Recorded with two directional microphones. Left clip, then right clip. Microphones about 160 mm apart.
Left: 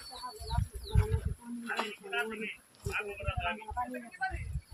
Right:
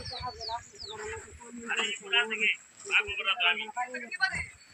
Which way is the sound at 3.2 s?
50° left (ahead or behind).